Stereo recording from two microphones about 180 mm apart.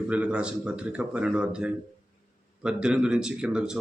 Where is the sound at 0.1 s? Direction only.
5° right (ahead or behind).